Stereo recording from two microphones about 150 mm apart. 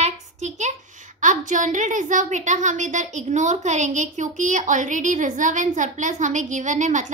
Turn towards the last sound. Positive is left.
turn(degrees=-55)  # may be behind; listen again after turning